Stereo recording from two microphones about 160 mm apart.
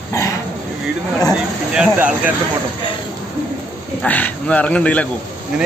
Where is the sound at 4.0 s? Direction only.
10° left (ahead or behind).